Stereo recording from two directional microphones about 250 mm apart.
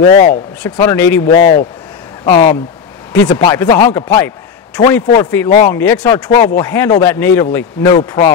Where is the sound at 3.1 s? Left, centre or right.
Centre.